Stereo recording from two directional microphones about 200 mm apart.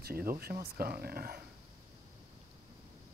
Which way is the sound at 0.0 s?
50° right (ahead or behind).